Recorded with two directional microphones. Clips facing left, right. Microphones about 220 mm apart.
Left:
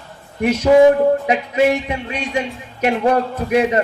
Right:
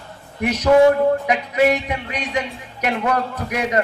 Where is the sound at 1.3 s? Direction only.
25° left (ahead or behind).